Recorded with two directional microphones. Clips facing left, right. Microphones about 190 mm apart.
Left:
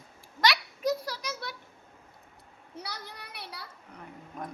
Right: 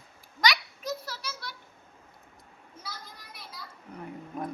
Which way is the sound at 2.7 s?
70° left (ahead or behind).